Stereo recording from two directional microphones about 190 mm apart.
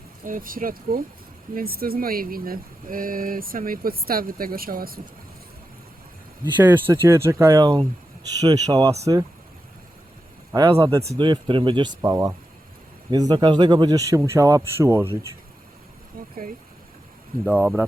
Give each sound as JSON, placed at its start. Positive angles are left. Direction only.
{"t": 0.3, "sound": "speech", "side_deg": -45}
{"t": 6.4, "sound": "speech", "side_deg": -10}
{"t": 10.5, "sound": "speech", "side_deg": -15}
{"t": 16.2, "sound": "a sound", "side_deg": -50}
{"t": 17.4, "sound": "speech", "side_deg": -10}